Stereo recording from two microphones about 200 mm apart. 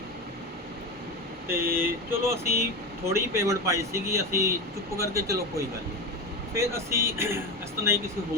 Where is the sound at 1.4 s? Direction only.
10° right (ahead or behind).